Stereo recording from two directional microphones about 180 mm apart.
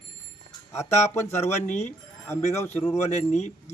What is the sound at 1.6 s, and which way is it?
Speech, 40° left (ahead or behind).